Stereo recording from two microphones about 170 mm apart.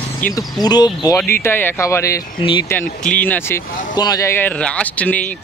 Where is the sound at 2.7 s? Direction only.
10° left (ahead or behind).